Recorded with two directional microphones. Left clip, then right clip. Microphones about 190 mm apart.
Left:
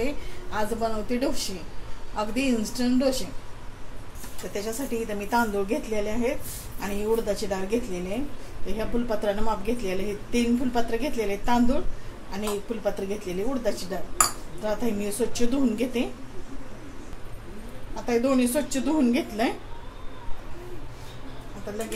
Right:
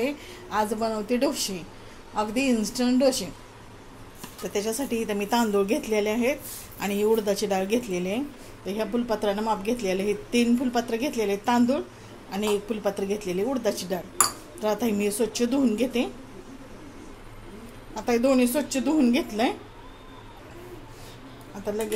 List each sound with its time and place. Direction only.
0.0 s a woman's voice: 30° right (ahead or behind)
4.5 s a woman's voice: 40° right (ahead or behind)
8.6 s a woman's voice: 30° right (ahead or behind)
17.9 s a woman's voice: 30° right (ahead or behind)